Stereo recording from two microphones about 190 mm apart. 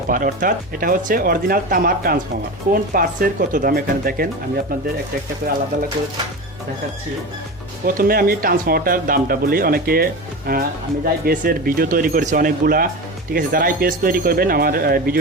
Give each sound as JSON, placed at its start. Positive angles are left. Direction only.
{"t": 0.1, "sound": "speech", "side_deg": -45}
{"t": 5.4, "sound": "speech", "side_deg": -50}
{"t": 7.9, "sound": "speech", "side_deg": -50}